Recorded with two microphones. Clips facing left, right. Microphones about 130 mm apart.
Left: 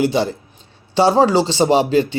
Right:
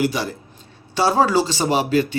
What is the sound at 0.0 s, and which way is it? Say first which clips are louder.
Speech: left 5 dB; 25° left (ahead or behind).